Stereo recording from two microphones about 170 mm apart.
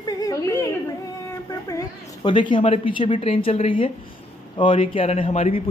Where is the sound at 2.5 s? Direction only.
35° left (ahead or behind).